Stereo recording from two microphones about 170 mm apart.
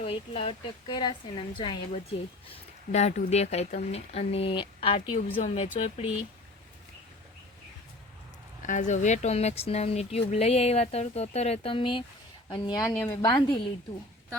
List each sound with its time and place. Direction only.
0.0 s a woman's voice: 30° left (ahead or behind)
2.9 s speech: 40° left (ahead or behind)
8.6 s a woman's voice: 45° left (ahead or behind); by 12.9 s 25° left (ahead or behind)
12.9 s speech: 10° left (ahead or behind)